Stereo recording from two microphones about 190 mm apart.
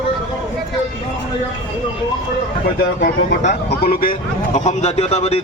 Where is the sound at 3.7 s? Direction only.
55° left (ahead or behind).